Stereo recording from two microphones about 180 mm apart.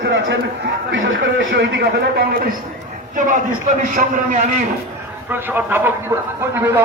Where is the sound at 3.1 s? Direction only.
45° right (ahead or behind).